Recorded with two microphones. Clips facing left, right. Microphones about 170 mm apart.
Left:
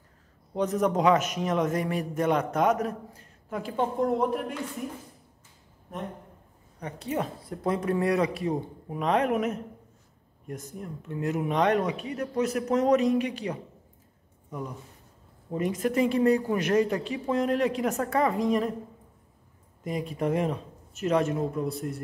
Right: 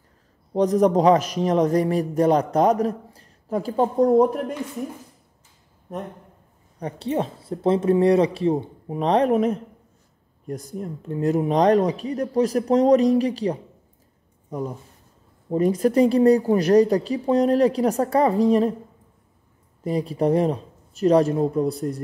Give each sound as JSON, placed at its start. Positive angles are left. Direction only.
{"t": 0.6, "sound": "a man's voice", "side_deg": -35}
{"t": 6.8, "sound": "a woman's voice", "side_deg": -30}
{"t": 19.8, "sound": "a man's voice", "side_deg": -35}